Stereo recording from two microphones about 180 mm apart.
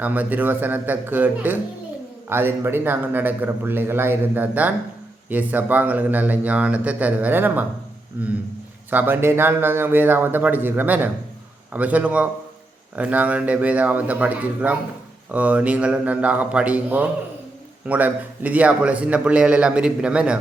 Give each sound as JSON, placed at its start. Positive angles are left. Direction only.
{"t": 0.0, "sound": "a man's voice", "side_deg": -10}
{"t": 8.9, "sound": "a man's voice", "side_deg": -10}